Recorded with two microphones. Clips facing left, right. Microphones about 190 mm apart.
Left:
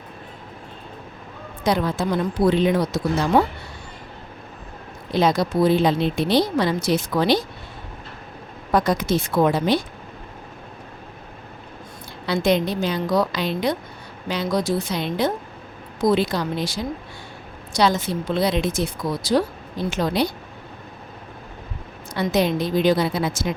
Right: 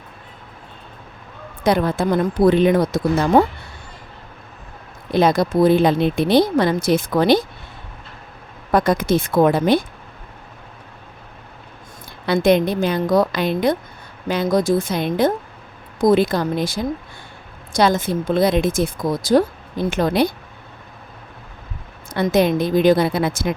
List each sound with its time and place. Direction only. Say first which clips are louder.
1.6 s speech: right 4 dB; 55° right (ahead or behind)
5.1 s speech: right 3 dB; 55° right (ahead or behind)
8.7 s speech: right 3 dB; 55° right (ahead or behind)
12.2 s speech: right 4 dB; 55° right (ahead or behind)
22.1 s speech: right 4 dB; 55° right (ahead or behind)